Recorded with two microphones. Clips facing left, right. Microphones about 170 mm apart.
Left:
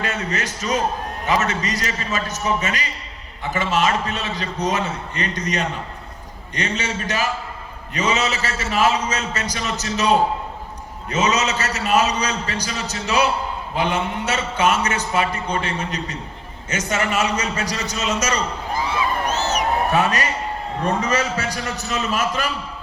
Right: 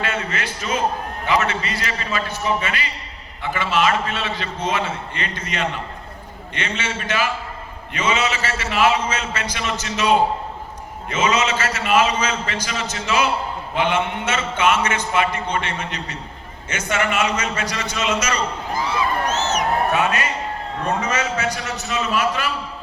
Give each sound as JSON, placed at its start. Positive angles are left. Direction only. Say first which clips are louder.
{"t": 0.0, "sound": "a man's voice", "louder": "even", "side_deg": 40}
{"t": 19.2, "sound": "a sound", "louder": "even", "side_deg": 10}
{"t": 19.9, "sound": "a man's voice", "louder": "left 1 dB", "side_deg": 35}